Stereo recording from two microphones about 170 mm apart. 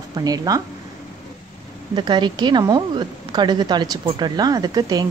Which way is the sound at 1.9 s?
25° right (ahead or behind).